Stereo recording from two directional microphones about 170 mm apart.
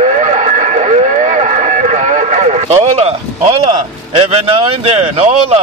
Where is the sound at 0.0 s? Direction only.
45° right (ahead or behind).